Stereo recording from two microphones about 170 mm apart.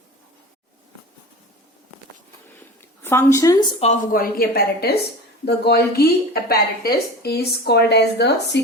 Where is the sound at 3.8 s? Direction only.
35° left (ahead or behind).